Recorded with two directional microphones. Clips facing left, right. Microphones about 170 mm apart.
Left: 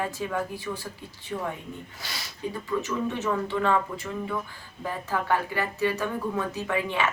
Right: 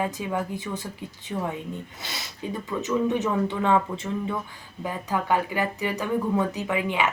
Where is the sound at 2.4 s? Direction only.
20° right (ahead or behind).